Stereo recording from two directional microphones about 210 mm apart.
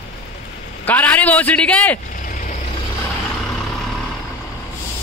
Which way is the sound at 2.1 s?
40° left (ahead or behind).